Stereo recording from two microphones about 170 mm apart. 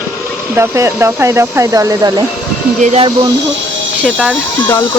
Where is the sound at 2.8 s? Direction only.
45° right (ahead or behind).